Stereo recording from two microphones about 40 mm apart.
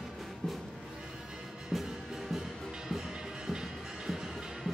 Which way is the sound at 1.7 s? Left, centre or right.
Centre.